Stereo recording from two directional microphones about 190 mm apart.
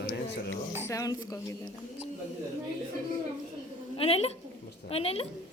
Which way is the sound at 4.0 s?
30° left (ahead or behind).